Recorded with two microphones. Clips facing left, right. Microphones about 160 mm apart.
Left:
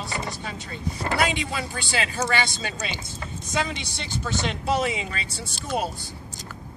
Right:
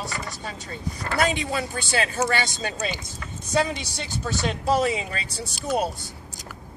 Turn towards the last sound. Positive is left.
turn(degrees=-40)  # may be behind; listen again after turning